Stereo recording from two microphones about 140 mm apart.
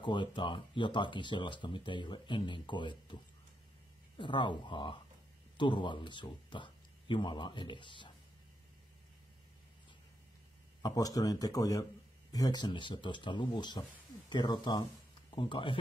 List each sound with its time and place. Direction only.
0.0 s speech: 35° left (ahead or behind)
4.2 s speech: 35° left (ahead or behind)
10.8 s speech: 25° left (ahead or behind)